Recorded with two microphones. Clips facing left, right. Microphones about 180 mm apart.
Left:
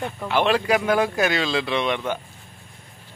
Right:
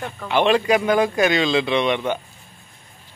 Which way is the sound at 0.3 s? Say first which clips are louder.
Right 3 dB; 5° left (ahead or behind).